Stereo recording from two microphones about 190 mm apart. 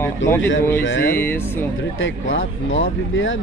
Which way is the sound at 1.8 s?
90° left.